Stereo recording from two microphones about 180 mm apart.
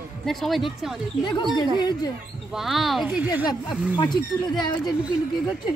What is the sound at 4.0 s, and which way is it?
Speech, 25° left (ahead or behind).